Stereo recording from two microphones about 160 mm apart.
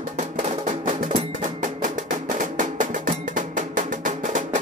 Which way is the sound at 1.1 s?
55° right (ahead or behind).